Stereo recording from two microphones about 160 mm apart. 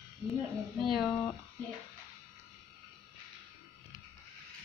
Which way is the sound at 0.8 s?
Centre (ahead or behind).